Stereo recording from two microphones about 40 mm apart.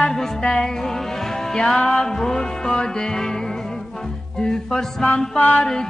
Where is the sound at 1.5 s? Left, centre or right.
Centre.